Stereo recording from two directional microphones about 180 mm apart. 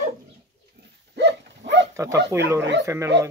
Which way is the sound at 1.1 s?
70° right (ahead or behind).